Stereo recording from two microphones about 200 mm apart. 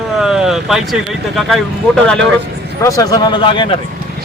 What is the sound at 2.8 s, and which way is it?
Speech, 15° left (ahead or behind).